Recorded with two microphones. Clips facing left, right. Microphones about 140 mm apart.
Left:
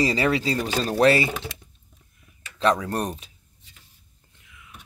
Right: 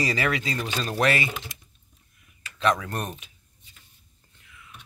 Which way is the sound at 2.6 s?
35° left (ahead or behind).